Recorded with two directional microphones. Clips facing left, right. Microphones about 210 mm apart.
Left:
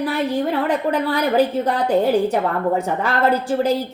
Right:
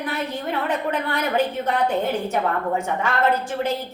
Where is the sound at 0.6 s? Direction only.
35° left (ahead or behind).